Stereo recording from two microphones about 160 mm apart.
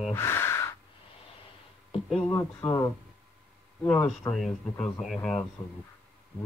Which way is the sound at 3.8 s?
10° left (ahead or behind).